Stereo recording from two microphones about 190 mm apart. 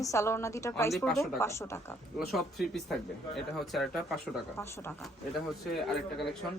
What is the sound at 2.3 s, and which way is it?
Speech, centre (ahead or behind).